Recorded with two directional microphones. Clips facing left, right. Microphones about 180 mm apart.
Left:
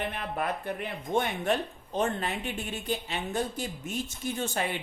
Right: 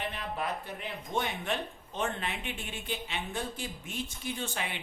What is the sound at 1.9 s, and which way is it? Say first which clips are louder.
A woman's voice: left 5 dB; 40° left (ahead or behind).